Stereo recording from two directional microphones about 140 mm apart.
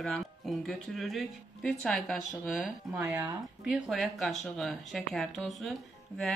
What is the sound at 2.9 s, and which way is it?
Speech, 15° right (ahead or behind).